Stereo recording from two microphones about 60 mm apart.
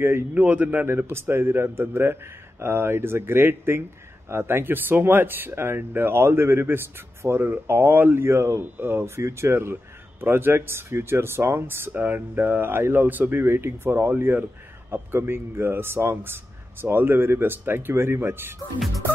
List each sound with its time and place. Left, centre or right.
0.3 s a man's voice: right
0.8 s a man's voice: right
8.3 s a man's voice: right